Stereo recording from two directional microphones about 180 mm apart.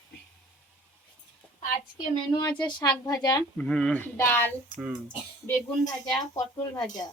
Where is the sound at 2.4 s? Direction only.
25° left (ahead or behind).